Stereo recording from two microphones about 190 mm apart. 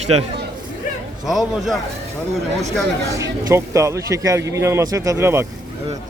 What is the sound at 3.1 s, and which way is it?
A man's voice, 15° right (ahead or behind).